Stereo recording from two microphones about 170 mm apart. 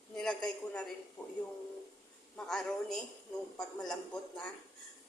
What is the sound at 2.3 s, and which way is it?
Speech, 5° left (ahead or behind).